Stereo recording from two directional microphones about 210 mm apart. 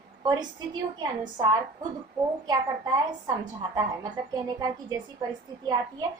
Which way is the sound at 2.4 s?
20° right (ahead or behind).